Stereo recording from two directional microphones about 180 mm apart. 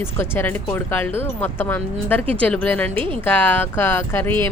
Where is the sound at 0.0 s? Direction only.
15° left (ahead or behind).